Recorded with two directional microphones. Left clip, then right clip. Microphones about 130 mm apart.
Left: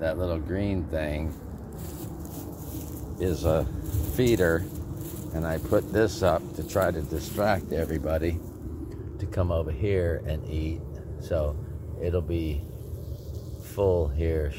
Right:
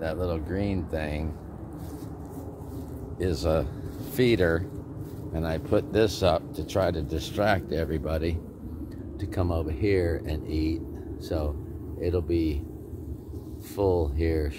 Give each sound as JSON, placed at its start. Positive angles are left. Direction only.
{"t": 0.0, "sound": "speech", "side_deg": -5}
{"t": 3.2, "sound": "speech", "side_deg": -15}
{"t": 13.7, "sound": "speech", "side_deg": -20}